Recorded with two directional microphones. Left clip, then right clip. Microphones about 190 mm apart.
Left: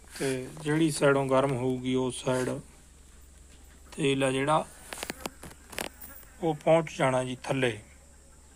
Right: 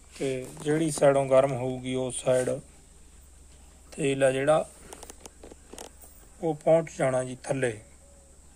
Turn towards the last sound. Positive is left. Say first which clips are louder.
# even
turn(degrees=-15)  # may be behind; listen again after turning